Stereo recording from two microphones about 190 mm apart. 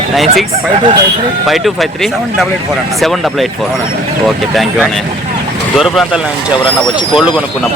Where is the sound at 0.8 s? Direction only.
25° right (ahead or behind).